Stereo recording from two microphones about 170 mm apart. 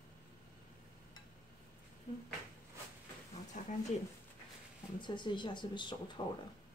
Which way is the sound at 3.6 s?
50° left (ahead or behind).